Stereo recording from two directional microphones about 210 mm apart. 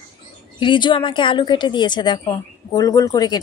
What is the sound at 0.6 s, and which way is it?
A woman's voice, 20° left (ahead or behind).